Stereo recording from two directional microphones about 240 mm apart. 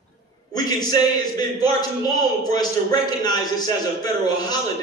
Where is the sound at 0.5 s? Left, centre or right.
Centre.